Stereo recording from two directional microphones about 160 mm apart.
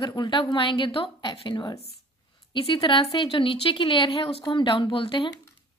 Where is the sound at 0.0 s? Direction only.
30° left (ahead or behind).